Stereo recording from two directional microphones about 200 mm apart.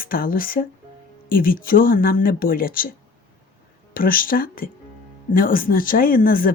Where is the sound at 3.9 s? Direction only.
45° left (ahead or behind).